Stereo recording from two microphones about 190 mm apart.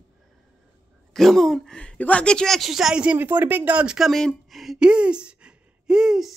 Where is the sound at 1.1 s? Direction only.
Centre (ahead or behind).